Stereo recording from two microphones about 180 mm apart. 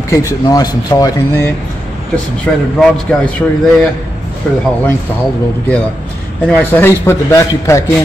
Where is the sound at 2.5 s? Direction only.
5° left (ahead or behind).